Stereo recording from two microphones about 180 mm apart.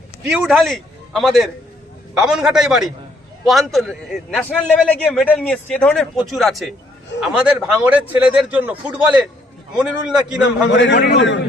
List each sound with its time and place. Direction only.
0.3 s a man's voice: 5° right (ahead or behind)
10.7 s a man's voice: 80° left